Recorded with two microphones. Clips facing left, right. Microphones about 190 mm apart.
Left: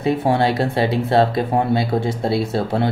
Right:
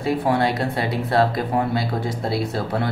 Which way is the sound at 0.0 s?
25° left (ahead or behind).